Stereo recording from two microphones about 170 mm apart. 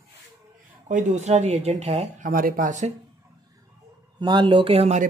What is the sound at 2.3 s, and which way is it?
Speech, 55° right (ahead or behind).